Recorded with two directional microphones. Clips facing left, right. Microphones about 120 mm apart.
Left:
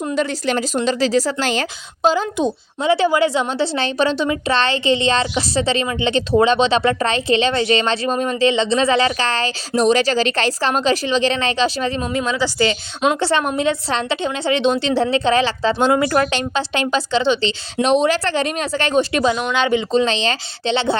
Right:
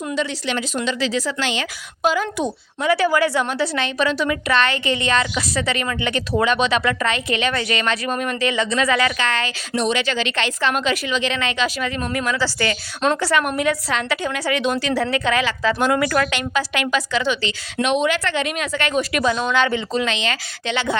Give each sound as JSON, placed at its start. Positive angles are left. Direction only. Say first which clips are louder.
{"t": 0.1, "sound": "a woman's voice", "louder": "left 4 dB", "side_deg": 45}
{"t": 2.0, "sound": "a woman's voice", "louder": "left 3 dB", "side_deg": 25}
{"t": 19.3, "sound": "a woman's voice", "louder": "left 1 dB", "side_deg": 15}